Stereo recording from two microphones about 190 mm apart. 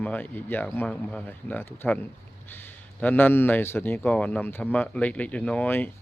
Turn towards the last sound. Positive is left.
turn(degrees=10)  # may be behind; listen again after turning